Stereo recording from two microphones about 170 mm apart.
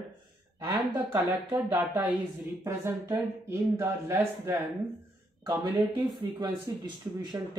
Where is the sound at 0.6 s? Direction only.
15° right (ahead or behind).